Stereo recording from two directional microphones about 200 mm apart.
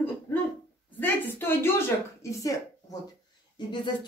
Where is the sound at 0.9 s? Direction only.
10° left (ahead or behind).